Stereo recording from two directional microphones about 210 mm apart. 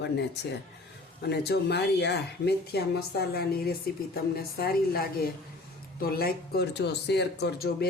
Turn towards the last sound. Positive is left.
turn(degrees=45)  # may be behind; listen again after turning